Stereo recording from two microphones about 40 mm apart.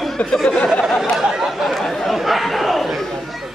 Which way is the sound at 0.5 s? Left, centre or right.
Left.